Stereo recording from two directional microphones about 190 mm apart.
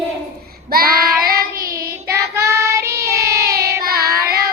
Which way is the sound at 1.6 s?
15° right (ahead or behind).